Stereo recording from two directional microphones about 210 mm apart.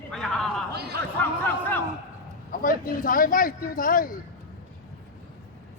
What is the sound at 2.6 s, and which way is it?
Speech, 40° left (ahead or behind).